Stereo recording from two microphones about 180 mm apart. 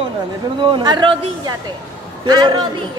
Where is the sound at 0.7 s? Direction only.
25° right (ahead or behind).